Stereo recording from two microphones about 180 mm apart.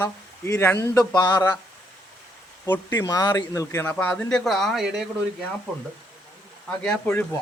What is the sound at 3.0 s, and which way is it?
Speech, 20° left (ahead or behind).